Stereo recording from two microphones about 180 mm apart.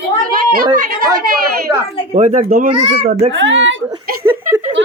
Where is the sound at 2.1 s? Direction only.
35° right (ahead or behind).